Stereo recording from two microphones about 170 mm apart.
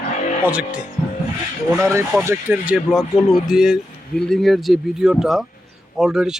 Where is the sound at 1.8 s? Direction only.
15° right (ahead or behind).